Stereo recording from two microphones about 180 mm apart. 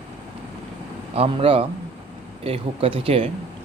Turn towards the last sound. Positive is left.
turn(degrees=-30)  # may be behind; listen again after turning